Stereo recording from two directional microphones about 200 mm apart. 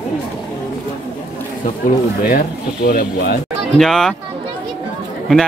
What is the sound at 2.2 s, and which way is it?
Speech, 50° left (ahead or behind).